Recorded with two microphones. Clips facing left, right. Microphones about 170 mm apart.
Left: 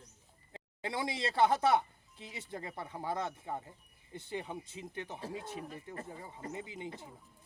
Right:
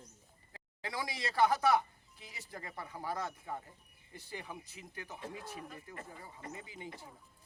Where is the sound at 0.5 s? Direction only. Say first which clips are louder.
Left 3 dB; 25° left (ahead or behind).